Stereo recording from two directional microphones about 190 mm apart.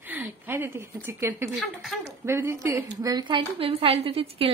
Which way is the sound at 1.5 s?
Centre (ahead or behind).